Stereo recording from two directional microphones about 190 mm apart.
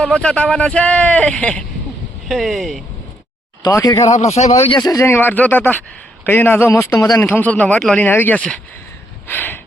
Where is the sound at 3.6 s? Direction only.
20° left (ahead or behind).